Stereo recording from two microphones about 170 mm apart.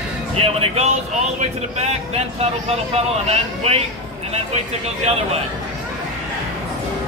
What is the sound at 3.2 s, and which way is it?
Speech, 35° right (ahead or behind).